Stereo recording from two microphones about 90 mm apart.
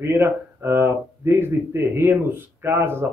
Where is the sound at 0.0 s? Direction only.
30° right (ahead or behind).